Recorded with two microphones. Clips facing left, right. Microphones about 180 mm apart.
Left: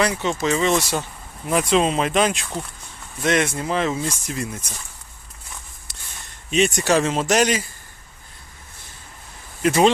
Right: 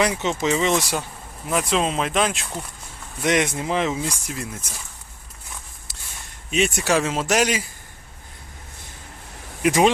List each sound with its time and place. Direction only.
0.0 s speech: 20° right (ahead or behind)
1.5 s speech: centre (ahead or behind)
3.2 s speech: 20° right (ahead or behind)
6.5 s speech: 5° right (ahead or behind)
9.6 s speech: 10° right (ahead or behind)